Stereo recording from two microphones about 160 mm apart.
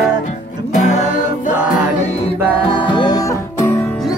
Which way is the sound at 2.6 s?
30° left (ahead or behind).